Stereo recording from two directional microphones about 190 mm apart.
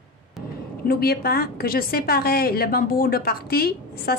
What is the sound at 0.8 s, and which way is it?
A woman's voice, 55° left (ahead or behind).